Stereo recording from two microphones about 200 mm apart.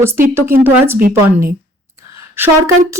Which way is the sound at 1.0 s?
45° right (ahead or behind).